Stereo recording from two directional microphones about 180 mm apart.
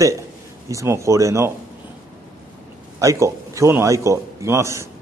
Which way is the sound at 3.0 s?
15° right (ahead or behind).